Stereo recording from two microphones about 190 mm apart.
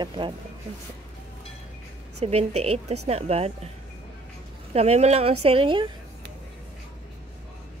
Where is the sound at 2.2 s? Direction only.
35° right (ahead or behind).